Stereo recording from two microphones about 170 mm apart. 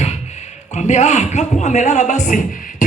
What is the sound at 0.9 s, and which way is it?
A man's voice, 45° left (ahead or behind).